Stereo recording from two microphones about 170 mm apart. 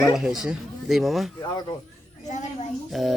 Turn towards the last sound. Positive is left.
turn(degrees=0)  # may be behind; listen again after turning